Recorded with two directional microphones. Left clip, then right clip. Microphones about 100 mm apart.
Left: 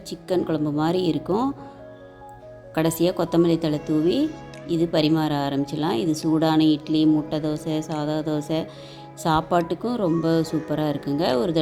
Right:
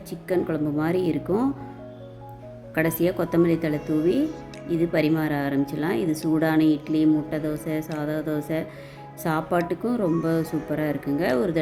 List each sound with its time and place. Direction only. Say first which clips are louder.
0.1 s speech: left 1 dB; 20° left (ahead or behind)
2.7 s speech: left 1 dB; 20° left (ahead or behind)